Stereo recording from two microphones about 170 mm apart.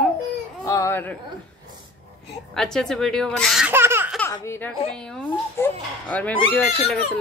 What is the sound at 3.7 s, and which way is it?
Laughter, 15° right (ahead or behind).